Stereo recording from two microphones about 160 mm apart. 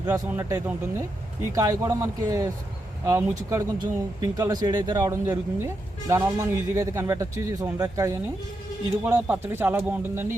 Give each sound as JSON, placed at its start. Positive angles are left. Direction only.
{"t": 0.3, "sound": "speech", "side_deg": -15}